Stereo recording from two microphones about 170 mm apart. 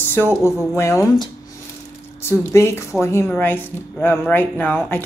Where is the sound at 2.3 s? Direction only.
15° left (ahead or behind).